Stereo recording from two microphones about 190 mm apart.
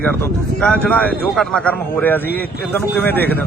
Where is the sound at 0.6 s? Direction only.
5° left (ahead or behind).